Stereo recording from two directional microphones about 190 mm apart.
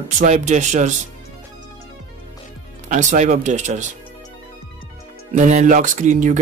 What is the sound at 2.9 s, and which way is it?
Speech, 40° right (ahead or behind).